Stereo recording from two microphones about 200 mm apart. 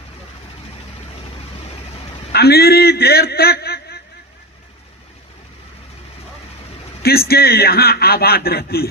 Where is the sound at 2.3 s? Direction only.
50° left (ahead or behind).